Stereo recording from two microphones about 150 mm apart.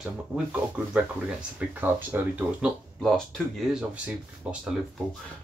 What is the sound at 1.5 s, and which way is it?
Speech, 10° right (ahead or behind).